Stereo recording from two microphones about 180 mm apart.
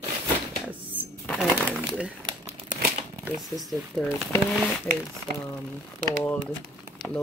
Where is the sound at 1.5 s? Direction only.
10° right (ahead or behind).